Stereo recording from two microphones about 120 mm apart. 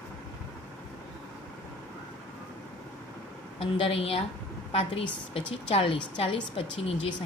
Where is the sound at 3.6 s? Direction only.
50° left (ahead or behind).